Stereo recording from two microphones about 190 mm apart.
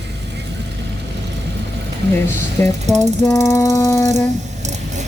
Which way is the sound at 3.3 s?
15° left (ahead or behind).